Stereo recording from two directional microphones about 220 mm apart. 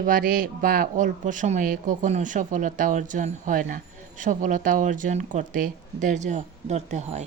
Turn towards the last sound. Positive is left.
turn(degrees=-30)  # may be behind; listen again after turning